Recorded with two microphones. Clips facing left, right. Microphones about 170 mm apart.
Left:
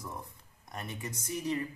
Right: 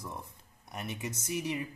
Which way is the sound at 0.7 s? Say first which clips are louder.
Right 2 dB; 15° right (ahead or behind).